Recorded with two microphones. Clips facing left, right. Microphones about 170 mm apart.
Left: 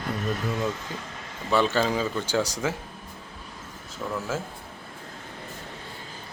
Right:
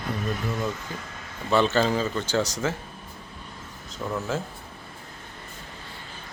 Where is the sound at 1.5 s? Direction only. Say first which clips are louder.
Right 1 dB; 10° left (ahead or behind).